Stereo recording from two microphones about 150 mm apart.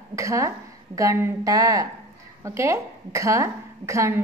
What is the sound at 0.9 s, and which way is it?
A woman's voice, 20° right (ahead or behind).